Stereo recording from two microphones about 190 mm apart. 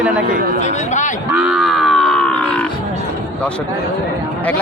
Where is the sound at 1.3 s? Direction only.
Centre (ahead or behind).